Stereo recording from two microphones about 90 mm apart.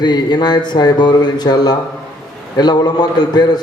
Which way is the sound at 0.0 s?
50° left (ahead or behind).